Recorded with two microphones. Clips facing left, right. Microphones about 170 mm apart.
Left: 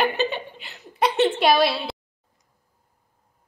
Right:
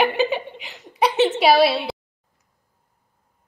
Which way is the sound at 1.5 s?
70° right (ahead or behind).